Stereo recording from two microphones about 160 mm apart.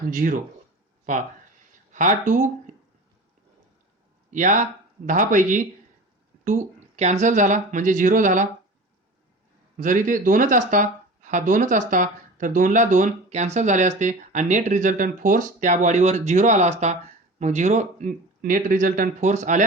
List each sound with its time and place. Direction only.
0.1 s speech: 55° right (ahead or behind)
1.9 s speech: 50° right (ahead or behind)
4.3 s speech: 50° right (ahead or behind)
9.7 s speech: 55° right (ahead or behind)